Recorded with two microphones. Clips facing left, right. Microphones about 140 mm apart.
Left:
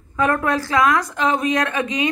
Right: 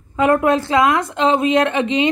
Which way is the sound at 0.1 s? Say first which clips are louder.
Right 5 dB; 20° right (ahead or behind).